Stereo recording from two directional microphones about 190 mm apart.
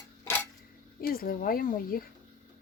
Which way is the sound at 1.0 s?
50° left (ahead or behind).